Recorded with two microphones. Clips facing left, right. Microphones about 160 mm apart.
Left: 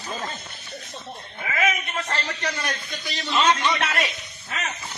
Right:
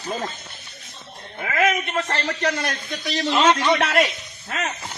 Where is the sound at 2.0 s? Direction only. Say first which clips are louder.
Right 5 dB; 85° right.